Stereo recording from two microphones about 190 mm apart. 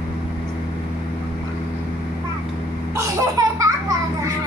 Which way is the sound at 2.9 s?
20° right (ahead or behind).